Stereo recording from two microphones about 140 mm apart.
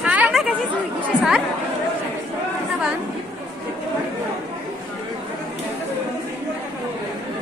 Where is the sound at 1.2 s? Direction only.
5° left (ahead or behind).